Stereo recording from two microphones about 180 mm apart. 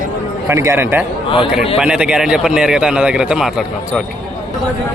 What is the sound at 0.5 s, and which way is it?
A man's voice, 15° right (ahead or behind).